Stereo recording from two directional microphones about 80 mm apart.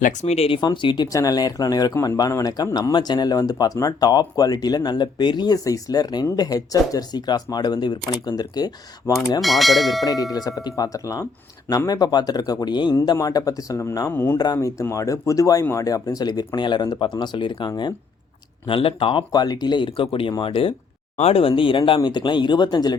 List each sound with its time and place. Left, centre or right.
0.5 s speech: left
1.1 s speech: left
5.6 s speech: left
9.4 s speech: centre
10.3 s speech: left
13.1 s speech: left
14.1 s speech: left
14.3 s speech: left
18.7 s speech: left
19.3 s speech: left